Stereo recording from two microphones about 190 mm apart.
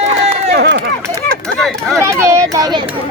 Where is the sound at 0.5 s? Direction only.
65° right (ahead or behind).